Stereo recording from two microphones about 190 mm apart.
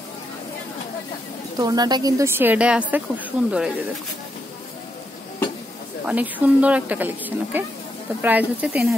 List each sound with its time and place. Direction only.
1.6 s a woman's voice: 20° right (ahead or behind)
6.0 s a woman's voice: 10° right (ahead or behind)